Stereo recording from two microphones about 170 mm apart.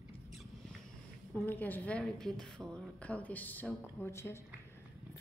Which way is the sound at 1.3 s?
10° left (ahead or behind).